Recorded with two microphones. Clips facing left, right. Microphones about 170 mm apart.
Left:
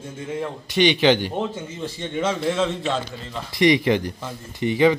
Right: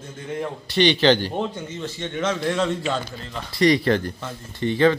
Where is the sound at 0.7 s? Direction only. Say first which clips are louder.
Even; 10° left (ahead or behind).